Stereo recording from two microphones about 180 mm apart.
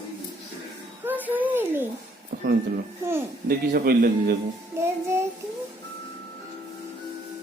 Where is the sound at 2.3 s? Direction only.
55° right (ahead or behind).